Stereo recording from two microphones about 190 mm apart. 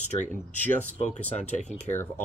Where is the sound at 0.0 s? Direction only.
40° left (ahead or behind).